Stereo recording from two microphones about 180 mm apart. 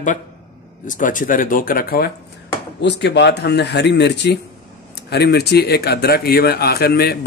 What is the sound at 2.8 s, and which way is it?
A man's voice, 75° left (ahead or behind).